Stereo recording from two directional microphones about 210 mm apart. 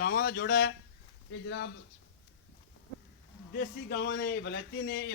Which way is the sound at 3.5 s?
50° left (ahead or behind).